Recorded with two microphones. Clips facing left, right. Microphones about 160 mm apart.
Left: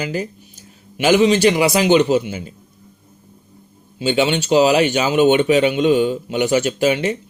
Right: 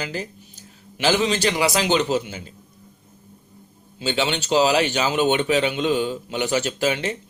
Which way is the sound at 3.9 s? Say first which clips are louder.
Left 6 dB; 15° left (ahead or behind).